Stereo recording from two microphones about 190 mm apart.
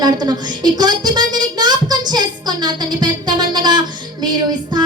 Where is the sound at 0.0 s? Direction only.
20° right (ahead or behind).